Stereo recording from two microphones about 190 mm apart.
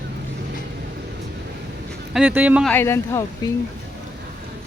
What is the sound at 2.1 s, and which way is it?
Speech, 10° right (ahead or behind).